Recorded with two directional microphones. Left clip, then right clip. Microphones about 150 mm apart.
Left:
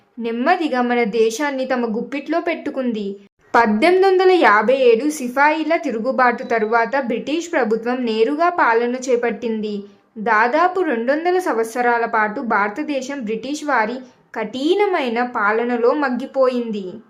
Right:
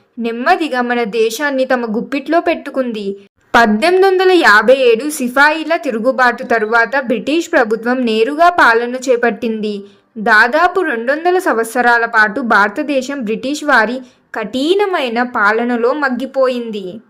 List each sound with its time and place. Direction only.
0.4 s a woman's voice: 30° right (ahead or behind)